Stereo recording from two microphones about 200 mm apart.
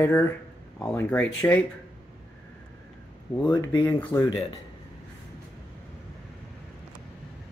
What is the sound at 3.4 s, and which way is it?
Speech, 20° left (ahead or behind).